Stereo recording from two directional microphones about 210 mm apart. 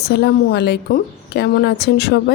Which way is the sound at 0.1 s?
50° left (ahead or behind).